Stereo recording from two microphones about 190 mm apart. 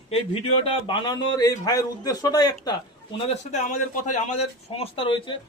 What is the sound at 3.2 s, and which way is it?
A man's voice, 40° left (ahead or behind).